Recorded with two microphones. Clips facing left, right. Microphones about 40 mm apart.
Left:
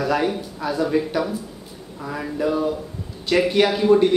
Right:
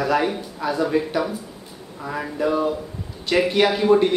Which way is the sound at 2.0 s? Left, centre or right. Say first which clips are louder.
Even; centre.